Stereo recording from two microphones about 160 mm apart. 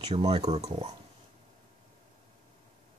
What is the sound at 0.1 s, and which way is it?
Speech, 40° right (ahead or behind).